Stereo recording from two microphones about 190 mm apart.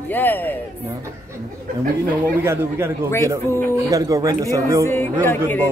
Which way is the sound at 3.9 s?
20° right (ahead or behind).